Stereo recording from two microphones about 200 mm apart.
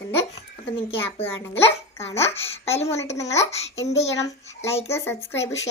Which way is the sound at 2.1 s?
30° left (ahead or behind).